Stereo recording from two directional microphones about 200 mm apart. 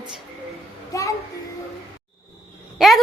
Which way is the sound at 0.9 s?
15° left (ahead or behind).